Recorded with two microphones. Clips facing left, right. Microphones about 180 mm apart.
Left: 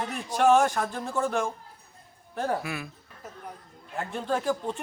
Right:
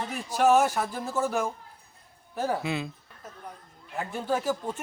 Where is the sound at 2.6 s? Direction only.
20° right (ahead or behind).